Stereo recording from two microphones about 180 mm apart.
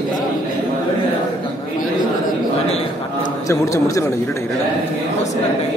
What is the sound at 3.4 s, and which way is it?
Speech, 15° left (ahead or behind).